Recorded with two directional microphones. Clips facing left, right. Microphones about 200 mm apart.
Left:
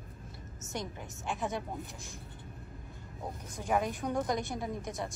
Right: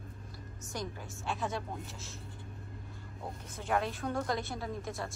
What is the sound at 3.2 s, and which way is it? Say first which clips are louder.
Speech: left 2 dB; 15° left (ahead or behind).